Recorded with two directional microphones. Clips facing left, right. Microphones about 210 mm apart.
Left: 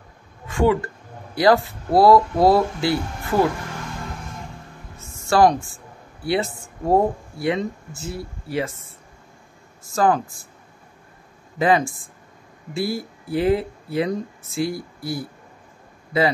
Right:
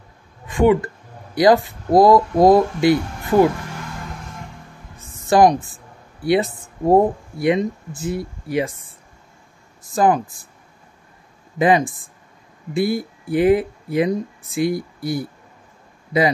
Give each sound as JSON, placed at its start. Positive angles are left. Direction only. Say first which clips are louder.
{"t": 0.5, "sound": "speech", "louder": "right 4 dB", "side_deg": -20}
{"t": 5.2, "sound": "speech", "louder": "right 3 dB", "side_deg": -15}
{"t": 9.9, "sound": "speech", "louder": "right 2 dB", "side_deg": -15}
{"t": 11.5, "sound": "speech", "louder": "right 2 dB", "side_deg": -20}